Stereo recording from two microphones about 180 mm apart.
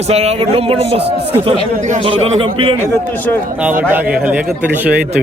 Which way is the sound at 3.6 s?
10° right (ahead or behind).